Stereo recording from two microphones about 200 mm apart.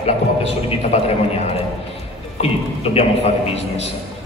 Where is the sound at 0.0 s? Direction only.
30° left (ahead or behind).